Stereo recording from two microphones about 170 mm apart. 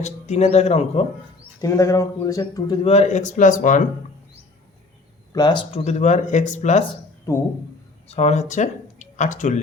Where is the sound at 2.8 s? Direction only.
40° left (ahead or behind).